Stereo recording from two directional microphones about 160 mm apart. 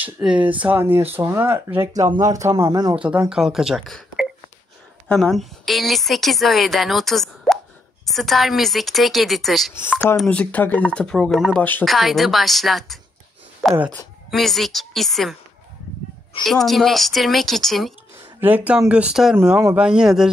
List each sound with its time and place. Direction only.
0.0 s speech: 10° right (ahead or behind)
3.0 s a woman's voice: 5° right (ahead or behind)
16.6 s a woman's voice: centre (ahead or behind)
18.4 s a woman's voice: 10° right (ahead or behind)